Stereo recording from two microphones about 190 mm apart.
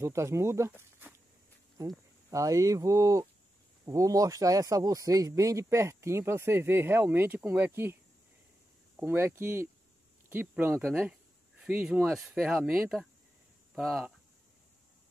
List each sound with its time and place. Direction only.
0.0 s speech: 15° right (ahead or behind)
2.3 s speech: 15° right (ahead or behind)
9.0 s speech: 10° right (ahead or behind)